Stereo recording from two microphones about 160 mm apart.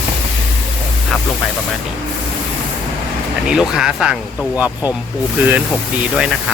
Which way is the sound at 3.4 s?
5° right (ahead or behind).